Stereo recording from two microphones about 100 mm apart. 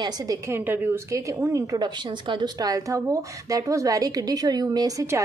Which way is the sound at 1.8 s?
50° right (ahead or behind).